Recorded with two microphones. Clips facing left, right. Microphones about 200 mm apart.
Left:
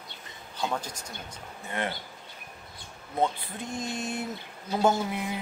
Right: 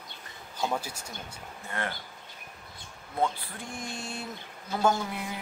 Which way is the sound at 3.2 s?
20° left (ahead or behind).